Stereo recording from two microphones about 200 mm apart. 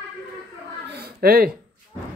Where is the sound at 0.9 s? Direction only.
50° right (ahead or behind).